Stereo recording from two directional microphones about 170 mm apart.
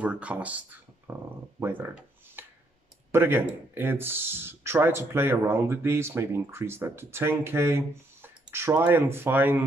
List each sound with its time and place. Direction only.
0.0 s speech: 10° right (ahead or behind)
1.6 s a sound: 10° right (ahead or behind)
3.1 s speech: 15° right (ahead or behind)